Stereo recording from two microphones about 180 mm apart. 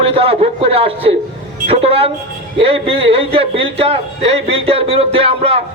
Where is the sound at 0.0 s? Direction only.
30° right (ahead or behind).